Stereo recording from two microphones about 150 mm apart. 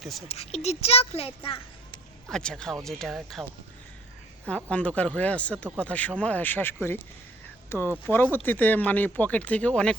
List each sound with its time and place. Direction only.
0.3 s a child's voice: 45° left (ahead or behind)
2.3 s speech: 5° left (ahead or behind)
4.4 s speech: 10° left (ahead or behind)